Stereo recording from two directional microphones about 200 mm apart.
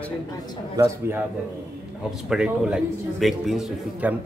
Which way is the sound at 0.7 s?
15° right (ahead or behind).